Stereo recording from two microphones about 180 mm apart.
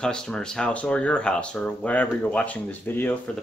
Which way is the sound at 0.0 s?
5° left (ahead or behind).